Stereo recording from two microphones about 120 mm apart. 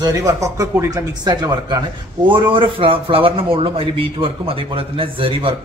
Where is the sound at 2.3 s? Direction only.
45° right (ahead or behind).